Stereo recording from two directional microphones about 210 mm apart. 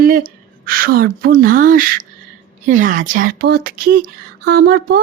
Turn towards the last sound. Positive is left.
turn(degrees=-45)  # may be behind; listen again after turning